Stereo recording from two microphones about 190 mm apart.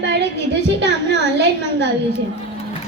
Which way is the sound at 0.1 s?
65° right (ahead or behind).